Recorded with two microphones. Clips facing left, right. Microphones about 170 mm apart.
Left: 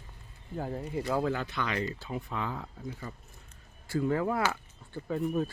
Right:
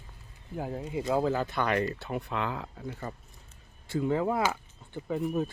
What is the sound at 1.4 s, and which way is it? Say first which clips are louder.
Speech: right 5 dB; 50° right (ahead or behind).